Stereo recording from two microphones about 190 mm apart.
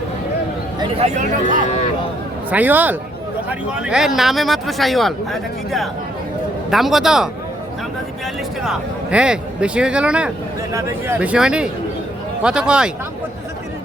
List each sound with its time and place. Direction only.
0.8 s speech: 35° right (ahead or behind)
1.6 s speech: 35° left (ahead or behind)
2.5 s speech: 10° right (ahead or behind)
8.6 s speech: 5° right (ahead or behind)